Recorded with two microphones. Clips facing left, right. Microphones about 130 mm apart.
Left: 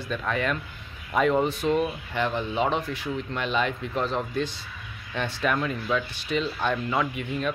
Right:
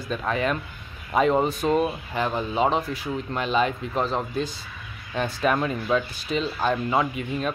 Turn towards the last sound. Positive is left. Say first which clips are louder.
# right 1 dB
turn(degrees=-35)  # may be behind; listen again after turning